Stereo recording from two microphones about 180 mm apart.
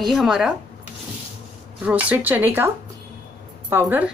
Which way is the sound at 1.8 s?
10° right (ahead or behind).